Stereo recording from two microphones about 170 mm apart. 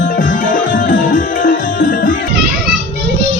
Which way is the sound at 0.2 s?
50° left (ahead or behind).